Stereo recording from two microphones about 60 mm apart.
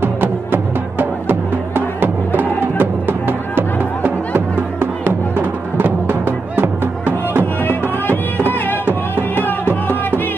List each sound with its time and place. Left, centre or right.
0.0 s music: right
9.3 s music: left